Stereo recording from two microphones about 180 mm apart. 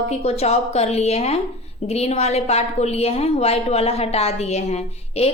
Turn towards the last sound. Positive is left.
turn(degrees=35)  # may be behind; listen again after turning